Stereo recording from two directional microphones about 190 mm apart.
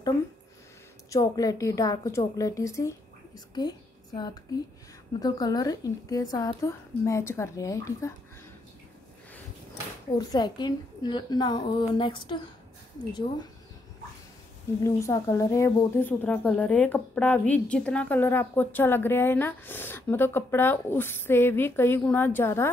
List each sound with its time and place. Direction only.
1.1 s a woman's voice: 20° left (ahead or behind)
10.1 s a woman's voice: 20° left (ahead or behind)
14.8 s speech: 15° left (ahead or behind)